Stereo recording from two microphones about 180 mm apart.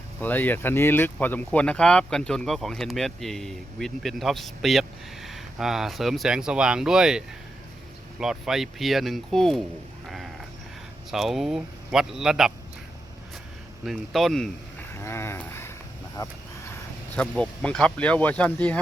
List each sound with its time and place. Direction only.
0.2 s speech: 10° left (ahead or behind)
11.1 s speech: centre (ahead or behind)
13.8 s speech: centre (ahead or behind)
14.9 s speech: 15° left (ahead or behind)
17.2 s speech: 5° left (ahead or behind)